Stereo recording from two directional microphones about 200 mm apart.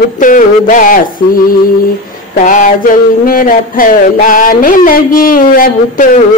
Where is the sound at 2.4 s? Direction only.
40° left (ahead or behind).